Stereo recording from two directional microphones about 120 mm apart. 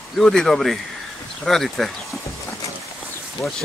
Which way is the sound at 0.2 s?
5° left (ahead or behind).